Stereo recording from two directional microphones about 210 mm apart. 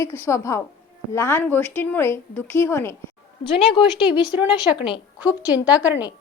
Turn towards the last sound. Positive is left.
turn(degrees=-5)  # may be behind; listen again after turning